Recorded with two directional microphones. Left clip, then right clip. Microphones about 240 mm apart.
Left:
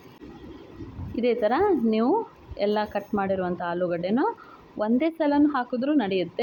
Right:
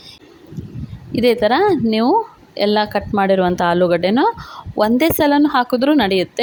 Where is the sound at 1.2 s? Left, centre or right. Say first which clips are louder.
Right 9 dB; right.